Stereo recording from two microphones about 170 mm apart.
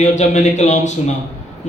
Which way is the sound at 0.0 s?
45° left (ahead or behind).